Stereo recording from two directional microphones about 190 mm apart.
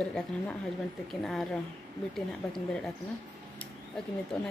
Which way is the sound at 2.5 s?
5° left (ahead or behind).